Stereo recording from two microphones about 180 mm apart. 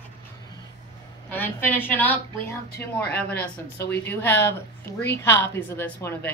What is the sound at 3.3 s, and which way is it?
Speech, 60° left (ahead or behind).